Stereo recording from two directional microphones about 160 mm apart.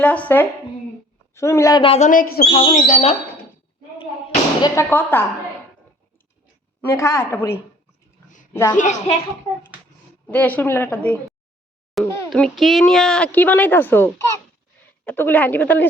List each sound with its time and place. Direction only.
0.0 s a woman's voice: 10° left (ahead or behind)
1.8 s speech: 35° left (ahead or behind)
2.0 s speech: 65° left (ahead or behind)
2.6 s speech: 45° left (ahead or behind)
4.6 s speech: 15° left (ahead or behind)
6.8 s speech: 15° left (ahead or behind)
8.7 s a child's voice: 50° left (ahead or behind)
10.2 s a child's voice: 10° left (ahead or behind)